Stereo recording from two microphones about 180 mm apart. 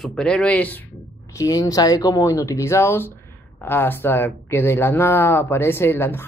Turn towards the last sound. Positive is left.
turn(degrees=10)  # may be behind; listen again after turning